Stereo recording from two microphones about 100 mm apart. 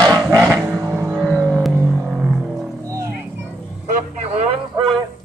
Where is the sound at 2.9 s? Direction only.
30° right (ahead or behind).